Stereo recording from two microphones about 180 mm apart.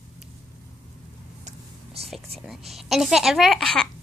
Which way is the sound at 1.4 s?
35° right (ahead or behind).